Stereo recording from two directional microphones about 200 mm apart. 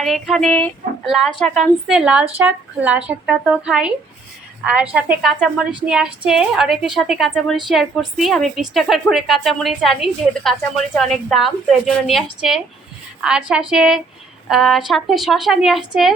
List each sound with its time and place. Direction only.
0.0 s a woman's voice: centre (ahead or behind)